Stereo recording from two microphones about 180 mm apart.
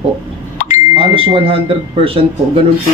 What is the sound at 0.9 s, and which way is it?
Speech, 30° right (ahead or behind).